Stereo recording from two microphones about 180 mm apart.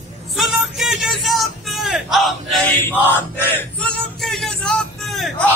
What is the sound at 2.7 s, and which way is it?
Male singing, 10° left (ahead or behind).